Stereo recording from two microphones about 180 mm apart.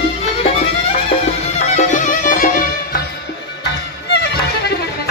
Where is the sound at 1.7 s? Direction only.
45° left (ahead or behind).